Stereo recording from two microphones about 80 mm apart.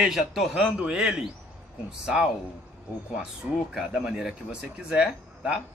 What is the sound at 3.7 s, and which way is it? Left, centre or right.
Speech, centre.